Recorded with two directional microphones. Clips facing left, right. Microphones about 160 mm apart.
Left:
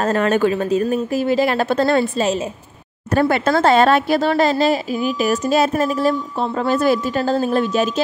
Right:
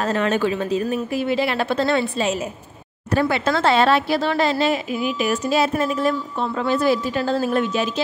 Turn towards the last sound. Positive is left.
turn(degrees=40)  # may be behind; listen again after turning